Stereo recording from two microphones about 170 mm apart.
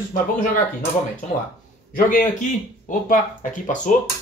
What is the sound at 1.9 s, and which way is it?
Speech, 55° left (ahead or behind).